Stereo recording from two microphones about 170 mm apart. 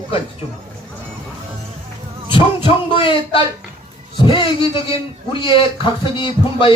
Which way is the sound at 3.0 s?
30° left (ahead or behind).